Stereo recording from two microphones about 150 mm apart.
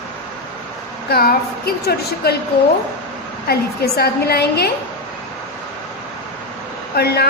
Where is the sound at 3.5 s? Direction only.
90° left.